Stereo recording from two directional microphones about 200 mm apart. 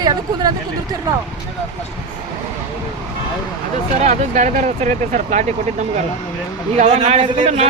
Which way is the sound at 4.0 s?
35° right (ahead or behind).